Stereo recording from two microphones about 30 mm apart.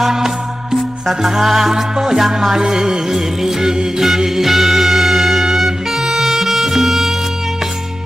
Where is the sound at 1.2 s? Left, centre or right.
Centre.